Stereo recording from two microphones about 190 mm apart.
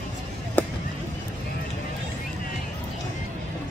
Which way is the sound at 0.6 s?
10° left (ahead or behind).